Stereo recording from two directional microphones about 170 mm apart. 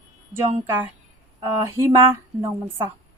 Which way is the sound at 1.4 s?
15° right (ahead or behind).